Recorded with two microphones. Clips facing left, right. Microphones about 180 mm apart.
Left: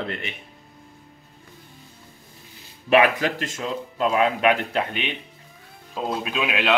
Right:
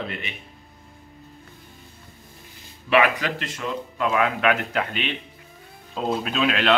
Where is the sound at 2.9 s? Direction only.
45° left (ahead or behind).